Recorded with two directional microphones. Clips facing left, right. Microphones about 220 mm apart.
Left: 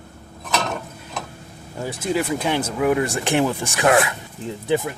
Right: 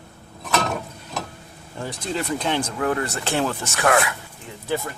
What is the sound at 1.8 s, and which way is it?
Speech, 5° left (ahead or behind).